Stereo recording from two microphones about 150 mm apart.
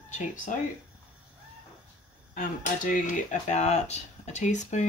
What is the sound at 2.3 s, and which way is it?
Speech, 65° left (ahead or behind).